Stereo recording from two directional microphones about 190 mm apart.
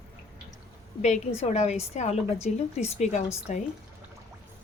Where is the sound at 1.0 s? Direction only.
35° left (ahead or behind).